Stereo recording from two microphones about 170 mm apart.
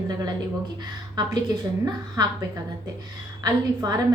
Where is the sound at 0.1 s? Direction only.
25° right (ahead or behind).